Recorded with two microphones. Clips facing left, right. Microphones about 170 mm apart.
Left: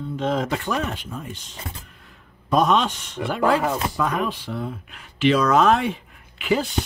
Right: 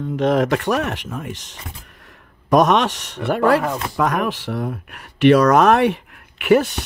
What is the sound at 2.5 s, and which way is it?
Speech, 75° right (ahead or behind).